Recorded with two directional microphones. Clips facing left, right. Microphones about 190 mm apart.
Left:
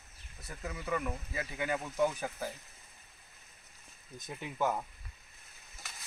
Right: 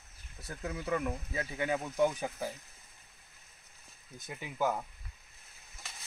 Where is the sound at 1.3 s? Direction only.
Centre (ahead or behind).